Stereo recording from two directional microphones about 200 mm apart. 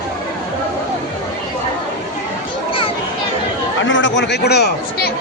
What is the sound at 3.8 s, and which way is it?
Chatter, 65° left (ahead or behind).